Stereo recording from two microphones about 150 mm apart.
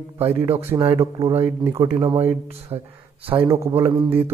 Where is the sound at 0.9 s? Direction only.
25° right (ahead or behind).